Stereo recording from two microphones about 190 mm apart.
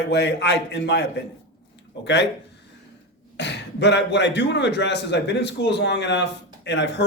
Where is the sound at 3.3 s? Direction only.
65° left (ahead or behind).